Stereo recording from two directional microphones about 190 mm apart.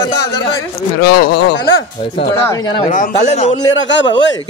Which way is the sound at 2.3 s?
15° left (ahead or behind).